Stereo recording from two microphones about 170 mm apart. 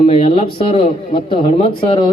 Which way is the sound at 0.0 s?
35° left (ahead or behind).